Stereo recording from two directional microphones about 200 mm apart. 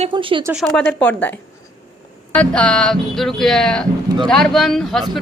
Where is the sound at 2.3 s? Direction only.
5° left (ahead or behind).